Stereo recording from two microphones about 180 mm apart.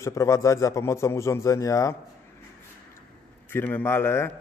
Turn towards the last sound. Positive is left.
turn(degrees=15)  # may be behind; listen again after turning